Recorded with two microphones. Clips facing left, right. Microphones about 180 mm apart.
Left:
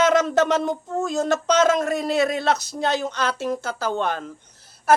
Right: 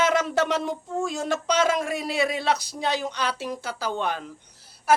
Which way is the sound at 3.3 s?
50° left (ahead or behind).